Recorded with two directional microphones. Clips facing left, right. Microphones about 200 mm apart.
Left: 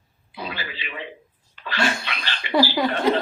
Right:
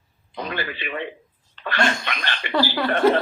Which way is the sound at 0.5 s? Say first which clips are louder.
Right 6 dB; 55° right (ahead or behind).